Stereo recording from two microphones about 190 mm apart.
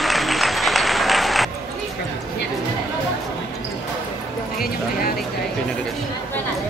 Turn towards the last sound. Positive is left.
turn(degrees=50)  # may be behind; listen again after turning